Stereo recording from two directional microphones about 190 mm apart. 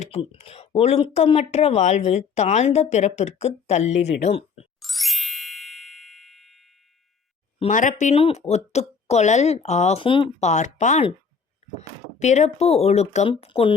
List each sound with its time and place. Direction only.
0.0 s speech: 30° left (ahead or behind)
4.8 s ding: centre (ahead or behind)
7.6 s speech: 40° left (ahead or behind)